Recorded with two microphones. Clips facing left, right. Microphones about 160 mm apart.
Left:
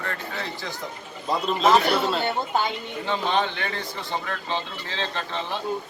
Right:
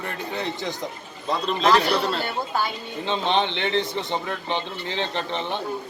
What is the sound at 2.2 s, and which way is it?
Speech, 20° left (ahead or behind).